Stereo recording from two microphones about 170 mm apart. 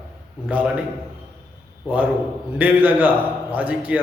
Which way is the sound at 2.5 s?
10° right (ahead or behind).